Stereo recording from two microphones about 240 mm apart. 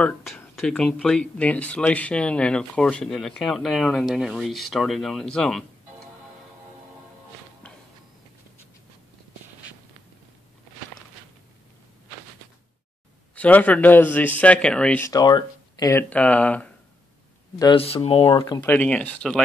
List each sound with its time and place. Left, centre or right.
0.0 s speech: centre
13.3 s a man's voice: centre
17.6 s a man's voice: left; by 19.4 s centre